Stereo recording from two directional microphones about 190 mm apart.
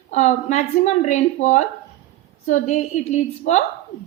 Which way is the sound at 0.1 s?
40° left (ahead or behind).